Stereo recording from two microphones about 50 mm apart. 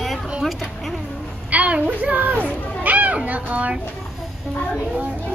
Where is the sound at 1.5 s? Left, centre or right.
Right.